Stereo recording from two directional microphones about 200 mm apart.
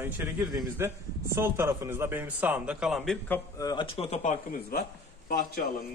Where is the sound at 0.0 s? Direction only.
10° right (ahead or behind).